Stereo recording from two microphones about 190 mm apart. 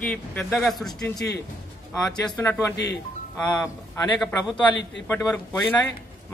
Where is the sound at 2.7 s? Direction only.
65° left (ahead or behind).